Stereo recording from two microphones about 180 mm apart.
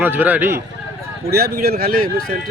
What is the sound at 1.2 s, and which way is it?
Speech, 60° right (ahead or behind).